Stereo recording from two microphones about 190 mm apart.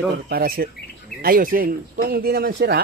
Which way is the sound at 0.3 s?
55° right (ahead or behind).